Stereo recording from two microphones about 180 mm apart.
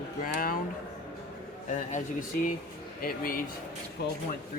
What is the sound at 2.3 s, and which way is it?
Speech, 50° left (ahead or behind).